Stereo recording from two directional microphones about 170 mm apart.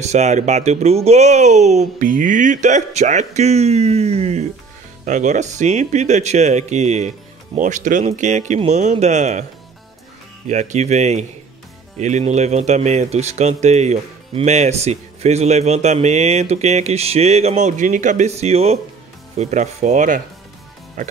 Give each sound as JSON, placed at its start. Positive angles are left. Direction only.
{"t": 0.0, "sound": "speech", "side_deg": -45}